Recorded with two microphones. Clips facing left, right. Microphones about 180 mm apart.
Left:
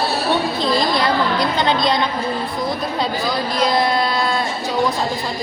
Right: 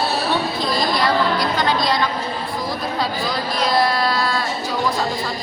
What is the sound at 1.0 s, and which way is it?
A woman's voice, 25° left (ahead or behind).